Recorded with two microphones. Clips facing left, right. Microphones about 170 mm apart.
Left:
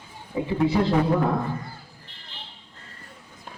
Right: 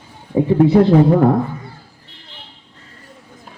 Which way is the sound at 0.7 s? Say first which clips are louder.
Right 8 dB; 45° right (ahead or behind).